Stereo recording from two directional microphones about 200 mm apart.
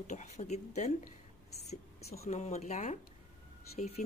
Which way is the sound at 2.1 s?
35° left (ahead or behind).